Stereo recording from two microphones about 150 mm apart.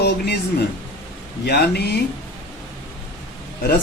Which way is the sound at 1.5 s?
90° left.